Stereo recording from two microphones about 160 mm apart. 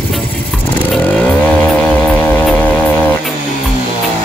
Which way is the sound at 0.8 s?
10° left (ahead or behind).